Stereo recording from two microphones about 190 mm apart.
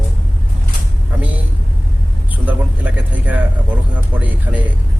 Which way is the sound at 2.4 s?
10° right (ahead or behind).